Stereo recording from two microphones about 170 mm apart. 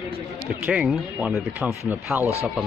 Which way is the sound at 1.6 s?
15° right (ahead or behind).